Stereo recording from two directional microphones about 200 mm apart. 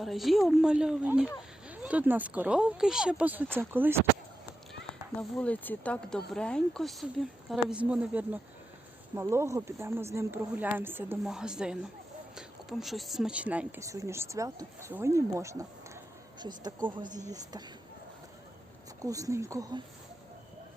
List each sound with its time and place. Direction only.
0.0 s speech: centre (ahead or behind)
5.1 s speech: 5° left (ahead or behind); by 16.7 s 20° right (ahead or behind)
17.1 s speech: 35° right (ahead or behind)
19.0 s speech: 15° right (ahead or behind)